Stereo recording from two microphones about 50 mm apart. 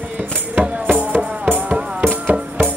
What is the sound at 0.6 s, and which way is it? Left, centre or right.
Music, centre.